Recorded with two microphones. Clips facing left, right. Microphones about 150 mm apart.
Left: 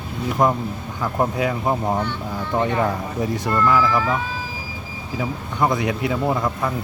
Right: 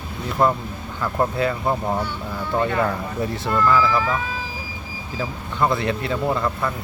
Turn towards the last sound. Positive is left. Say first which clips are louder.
# left 1 dB
turn(degrees=15)  # may be behind; listen again after turning